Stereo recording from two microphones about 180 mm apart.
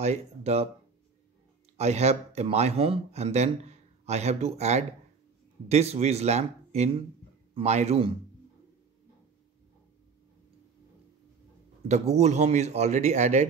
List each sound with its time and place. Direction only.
0.0 s speech: 35° right (ahead or behind)
1.8 s speech: 35° right (ahead or behind)
11.9 s speech: 40° right (ahead or behind)